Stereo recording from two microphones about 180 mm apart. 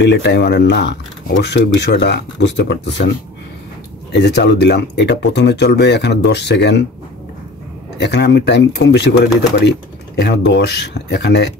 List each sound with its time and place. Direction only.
0.0 s speech: 70° left (ahead or behind)
4.1 s speech: 70° left (ahead or behind)
8.0 s speech: 70° left (ahead or behind)